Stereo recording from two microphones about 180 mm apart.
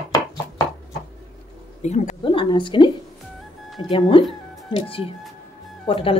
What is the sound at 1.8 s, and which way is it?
Speech, 40° left (ahead or behind).